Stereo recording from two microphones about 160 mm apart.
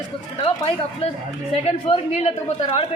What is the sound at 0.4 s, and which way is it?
Speech, 40° left (ahead or behind).